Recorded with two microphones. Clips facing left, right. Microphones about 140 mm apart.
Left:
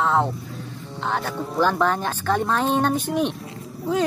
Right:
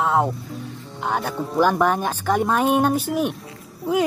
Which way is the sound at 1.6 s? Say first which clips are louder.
Right 2 dB; 10° right (ahead or behind).